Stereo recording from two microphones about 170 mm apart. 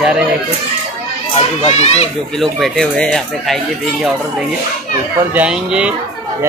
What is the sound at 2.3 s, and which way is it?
Speech, centre (ahead or behind).